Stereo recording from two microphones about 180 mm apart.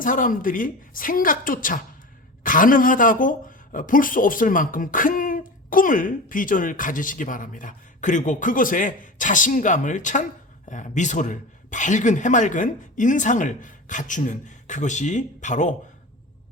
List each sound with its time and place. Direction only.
0.0 s speech: 50° left (ahead or behind)